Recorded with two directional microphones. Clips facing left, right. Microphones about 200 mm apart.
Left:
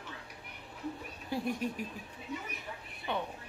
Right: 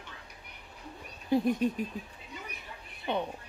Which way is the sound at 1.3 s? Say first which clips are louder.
Right 8 dB; 20° right (ahead or behind).